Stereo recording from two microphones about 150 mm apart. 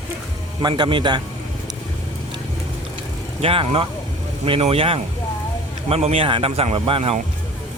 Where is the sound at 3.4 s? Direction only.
35° right (ahead or behind).